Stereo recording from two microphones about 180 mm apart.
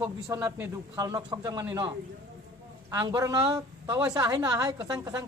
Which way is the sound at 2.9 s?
20° right (ahead or behind).